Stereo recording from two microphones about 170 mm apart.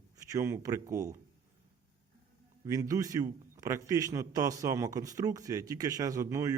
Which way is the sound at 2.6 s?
20° right (ahead or behind).